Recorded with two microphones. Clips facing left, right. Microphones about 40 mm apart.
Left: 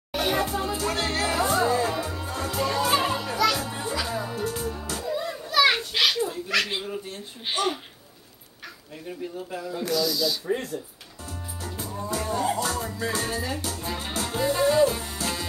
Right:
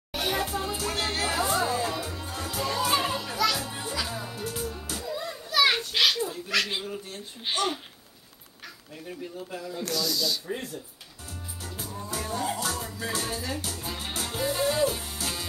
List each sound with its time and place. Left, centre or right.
0.1 s music: centre
3.3 s children playing: centre
4.1 s music: centre
5.0 s children playing: centre
9.0 s speech: centre
10.4 s music: centre
11.8 s music: centre
13.9 s music: centre